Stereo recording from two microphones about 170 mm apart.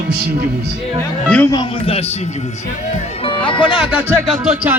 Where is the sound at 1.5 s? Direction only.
35° left (ahead or behind).